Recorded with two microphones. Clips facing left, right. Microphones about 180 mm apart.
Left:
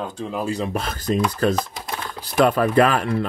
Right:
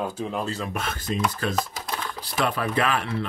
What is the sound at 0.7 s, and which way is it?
Speech, 35° left (ahead or behind).